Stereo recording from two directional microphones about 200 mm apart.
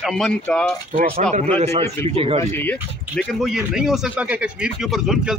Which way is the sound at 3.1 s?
Centre (ahead or behind).